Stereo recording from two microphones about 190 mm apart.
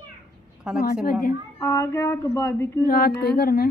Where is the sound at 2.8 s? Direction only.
50° left (ahead or behind).